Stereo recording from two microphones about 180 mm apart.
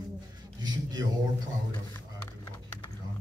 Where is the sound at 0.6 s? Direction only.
20° right (ahead or behind).